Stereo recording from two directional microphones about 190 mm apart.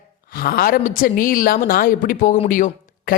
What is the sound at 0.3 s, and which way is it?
A woman's voice, 50° left (ahead or behind).